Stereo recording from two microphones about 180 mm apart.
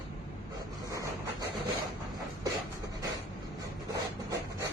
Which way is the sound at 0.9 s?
20° right (ahead or behind).